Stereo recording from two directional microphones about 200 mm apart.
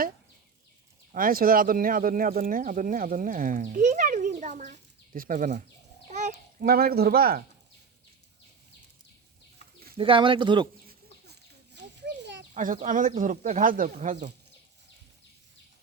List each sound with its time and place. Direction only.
1.1 s a child's voice: 45° right (ahead or behind)
10.0 s speech: 25° right (ahead or behind)
11.3 s a sound: 60° right (ahead or behind)
12.5 s speech: 40° right (ahead or behind)